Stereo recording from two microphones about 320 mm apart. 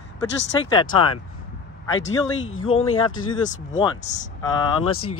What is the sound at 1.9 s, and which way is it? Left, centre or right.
Speech, left.